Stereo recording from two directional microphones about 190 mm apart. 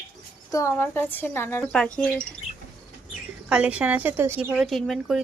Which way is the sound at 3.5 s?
5° right (ahead or behind).